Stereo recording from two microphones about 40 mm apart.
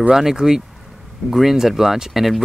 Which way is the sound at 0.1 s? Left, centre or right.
Centre.